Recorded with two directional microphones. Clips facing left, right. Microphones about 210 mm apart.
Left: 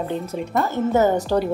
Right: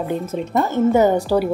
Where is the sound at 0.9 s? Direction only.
15° right (ahead or behind).